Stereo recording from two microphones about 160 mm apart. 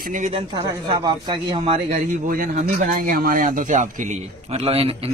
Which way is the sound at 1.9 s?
60° right (ahead or behind).